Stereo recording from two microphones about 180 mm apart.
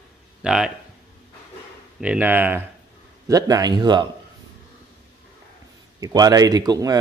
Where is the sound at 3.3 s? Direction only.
20° right (ahead or behind).